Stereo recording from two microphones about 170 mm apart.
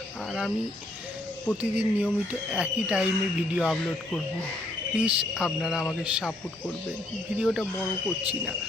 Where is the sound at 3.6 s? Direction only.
5° left (ahead or behind).